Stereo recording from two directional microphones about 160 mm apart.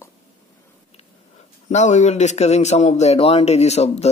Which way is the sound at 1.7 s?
45° left (ahead or behind).